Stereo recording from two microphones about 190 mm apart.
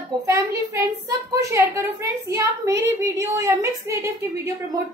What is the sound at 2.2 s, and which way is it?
A child's voice, 15° right (ahead or behind).